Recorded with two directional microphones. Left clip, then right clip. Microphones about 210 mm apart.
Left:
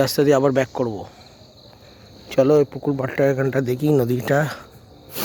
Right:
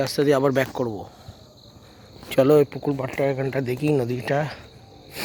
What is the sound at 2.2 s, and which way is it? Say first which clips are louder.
Speech: left 1 dB; centre (ahead or behind).